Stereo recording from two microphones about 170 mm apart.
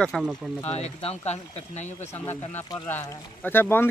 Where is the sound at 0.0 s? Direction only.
Centre (ahead or behind).